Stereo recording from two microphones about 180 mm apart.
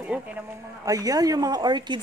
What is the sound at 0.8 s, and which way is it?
A woman's voice, 20° right (ahead or behind).